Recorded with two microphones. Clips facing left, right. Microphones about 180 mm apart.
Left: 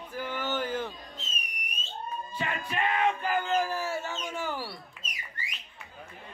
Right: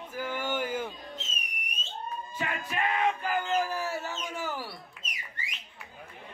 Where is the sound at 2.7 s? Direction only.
Centre (ahead or behind).